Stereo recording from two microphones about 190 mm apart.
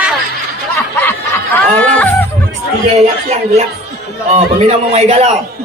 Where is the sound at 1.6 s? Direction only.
10° left (ahead or behind).